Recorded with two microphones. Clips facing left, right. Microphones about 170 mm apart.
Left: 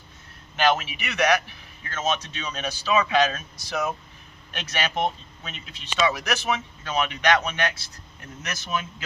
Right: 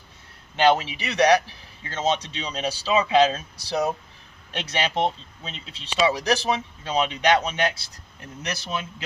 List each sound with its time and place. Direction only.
0.5 s a man's voice: 30° right (ahead or behind)